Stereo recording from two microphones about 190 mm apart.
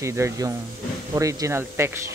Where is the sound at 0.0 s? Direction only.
15° right (ahead or behind).